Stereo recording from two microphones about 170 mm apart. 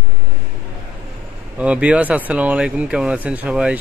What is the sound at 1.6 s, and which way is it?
Speech, 5° right (ahead or behind).